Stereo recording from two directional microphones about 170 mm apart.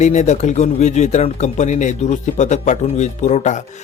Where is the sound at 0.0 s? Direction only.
45° left (ahead or behind).